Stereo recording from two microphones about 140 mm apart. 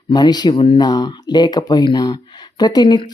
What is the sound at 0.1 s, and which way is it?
A woman's voice, 30° left (ahead or behind).